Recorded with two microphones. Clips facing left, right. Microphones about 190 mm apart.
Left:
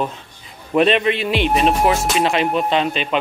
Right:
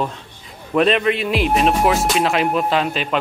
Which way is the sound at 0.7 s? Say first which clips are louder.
Left 1 dB; centre (ahead or behind).